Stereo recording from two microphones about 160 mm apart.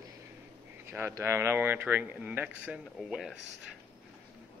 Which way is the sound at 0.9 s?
15° right (ahead or behind).